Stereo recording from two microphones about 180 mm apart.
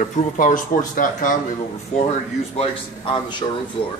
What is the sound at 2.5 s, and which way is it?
Speech, 25° left (ahead or behind).